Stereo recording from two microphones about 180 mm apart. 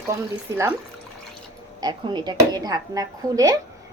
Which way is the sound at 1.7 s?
25° right (ahead or behind).